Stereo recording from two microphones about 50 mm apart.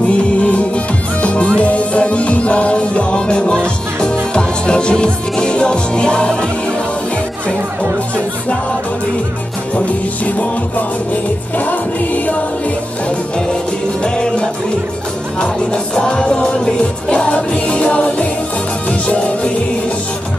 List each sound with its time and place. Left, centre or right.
0.4 s music: left
9.8 s music: left
14.0 s music: centre